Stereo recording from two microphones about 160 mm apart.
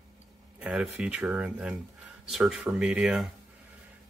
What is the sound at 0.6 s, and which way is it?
Speech, 5° right (ahead or behind).